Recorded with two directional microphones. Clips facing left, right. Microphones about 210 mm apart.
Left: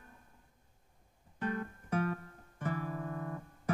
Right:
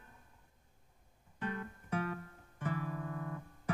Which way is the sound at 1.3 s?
45° left (ahead or behind).